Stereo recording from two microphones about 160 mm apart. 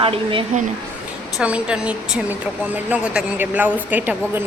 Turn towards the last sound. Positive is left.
turn(degrees=-10)  # may be behind; listen again after turning